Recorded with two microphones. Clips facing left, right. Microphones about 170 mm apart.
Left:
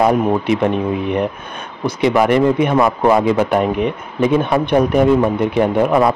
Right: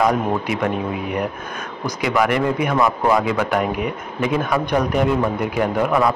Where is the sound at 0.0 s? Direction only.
25° left (ahead or behind).